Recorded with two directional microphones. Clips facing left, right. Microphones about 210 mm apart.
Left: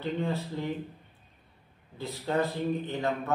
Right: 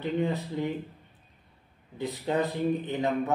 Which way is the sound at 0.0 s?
15° right (ahead or behind).